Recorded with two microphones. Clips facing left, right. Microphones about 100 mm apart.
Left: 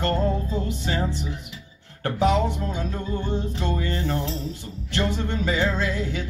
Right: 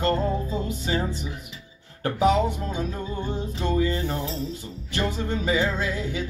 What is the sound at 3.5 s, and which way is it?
Music, 15° right (ahead or behind).